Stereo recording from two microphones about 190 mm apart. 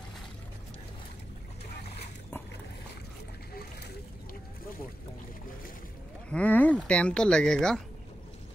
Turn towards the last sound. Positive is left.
turn(degrees=5)  # may be behind; listen again after turning